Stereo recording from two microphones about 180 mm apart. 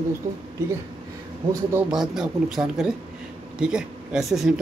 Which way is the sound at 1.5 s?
15° right (ahead or behind).